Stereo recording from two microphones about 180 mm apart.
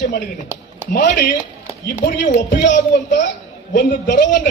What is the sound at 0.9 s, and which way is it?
Speech, 60° left (ahead or behind).